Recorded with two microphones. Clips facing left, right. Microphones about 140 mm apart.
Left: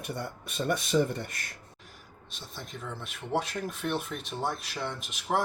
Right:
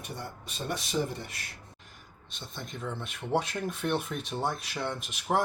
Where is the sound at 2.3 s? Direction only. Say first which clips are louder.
Right 2 dB; centre (ahead or behind).